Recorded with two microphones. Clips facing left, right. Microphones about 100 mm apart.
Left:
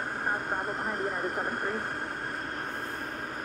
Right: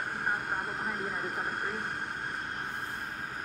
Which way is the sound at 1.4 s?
45° left (ahead or behind).